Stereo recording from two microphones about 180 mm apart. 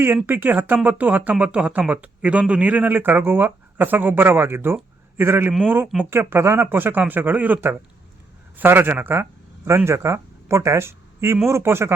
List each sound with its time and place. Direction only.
0.0 s speech: 10° right (ahead or behind)